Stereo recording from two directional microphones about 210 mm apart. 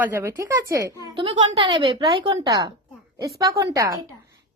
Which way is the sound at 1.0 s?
25° right (ahead or behind).